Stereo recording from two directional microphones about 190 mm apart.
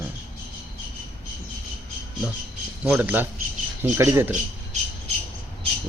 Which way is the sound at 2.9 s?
10° right (ahead or behind).